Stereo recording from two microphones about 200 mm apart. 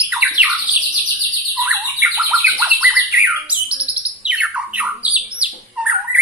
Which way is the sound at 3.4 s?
5° right (ahead or behind).